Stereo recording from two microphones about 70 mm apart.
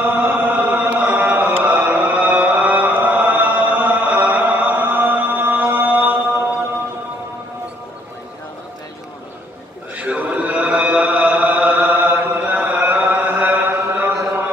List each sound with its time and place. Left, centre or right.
0.0 s chant: right
9.9 s music: centre